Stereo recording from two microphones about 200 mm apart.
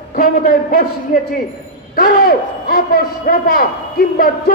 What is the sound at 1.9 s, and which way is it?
A man's voice, 50° left (ahead or behind).